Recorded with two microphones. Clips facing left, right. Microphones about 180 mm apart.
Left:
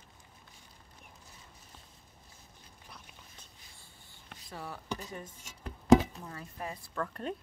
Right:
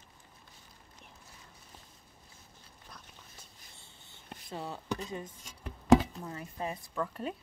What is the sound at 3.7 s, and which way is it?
Writing, 25° right (ahead or behind).